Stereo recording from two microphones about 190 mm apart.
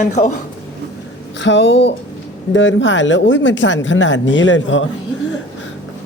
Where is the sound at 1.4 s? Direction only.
70° left (ahead or behind).